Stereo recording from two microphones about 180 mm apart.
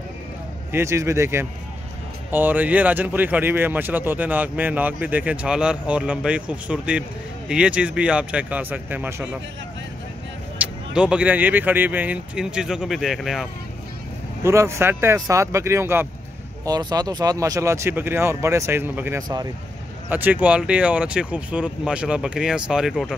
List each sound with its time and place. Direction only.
0.7 s speech: 15° right (ahead or behind)
10.6 s speech: 5° right (ahead or behind)
14.4 s speech: 15° right (ahead or behind)